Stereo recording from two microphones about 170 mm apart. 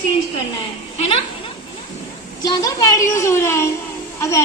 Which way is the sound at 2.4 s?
25° left (ahead or behind).